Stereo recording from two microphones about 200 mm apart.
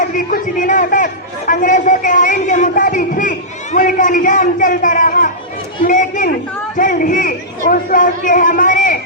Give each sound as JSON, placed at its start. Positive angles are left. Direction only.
{"t": 0.0, "sound": "a man's voice", "side_deg": 45}
{"t": 5.8, "sound": "chatter", "side_deg": 40}
{"t": 6.7, "sound": "a sound", "side_deg": 40}